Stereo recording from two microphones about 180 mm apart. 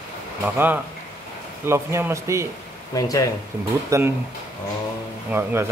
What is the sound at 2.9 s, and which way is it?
Speech, 20° left (ahead or behind).